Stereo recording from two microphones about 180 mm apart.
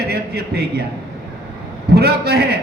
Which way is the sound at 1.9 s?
60° right (ahead or behind).